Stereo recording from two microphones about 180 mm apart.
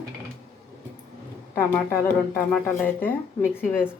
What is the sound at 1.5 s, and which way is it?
Speech, 10° left (ahead or behind).